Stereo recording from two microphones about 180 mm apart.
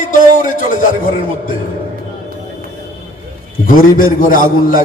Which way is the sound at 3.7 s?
50° left (ahead or behind).